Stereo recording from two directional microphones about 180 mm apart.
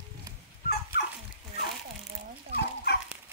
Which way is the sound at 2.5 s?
65° left (ahead or behind).